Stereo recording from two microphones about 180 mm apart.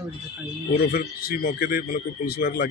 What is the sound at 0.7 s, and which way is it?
Speech, 60° left (ahead or behind).